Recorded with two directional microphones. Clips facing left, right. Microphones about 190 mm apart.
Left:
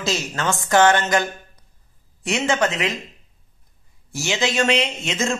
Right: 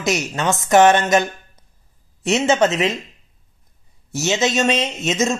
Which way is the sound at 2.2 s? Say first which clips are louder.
Right 5 dB; 25° right (ahead or behind).